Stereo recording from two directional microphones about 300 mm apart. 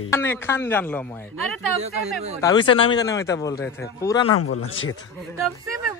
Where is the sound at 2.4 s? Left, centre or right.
Centre.